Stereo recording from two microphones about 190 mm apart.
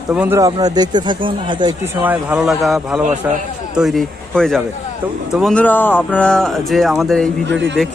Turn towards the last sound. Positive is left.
turn(degrees=5)  # may be behind; listen again after turning